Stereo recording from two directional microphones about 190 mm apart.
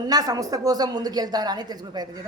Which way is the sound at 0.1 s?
20° right (ahead or behind).